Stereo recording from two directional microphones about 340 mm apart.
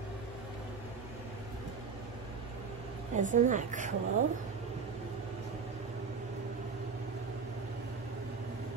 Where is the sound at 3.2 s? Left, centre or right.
Right.